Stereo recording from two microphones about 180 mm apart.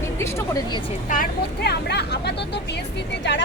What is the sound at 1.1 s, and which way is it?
Speech, 55° left (ahead or behind).